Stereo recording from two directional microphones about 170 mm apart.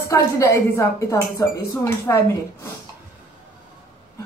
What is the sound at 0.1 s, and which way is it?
A woman's voice, 15° left (ahead or behind).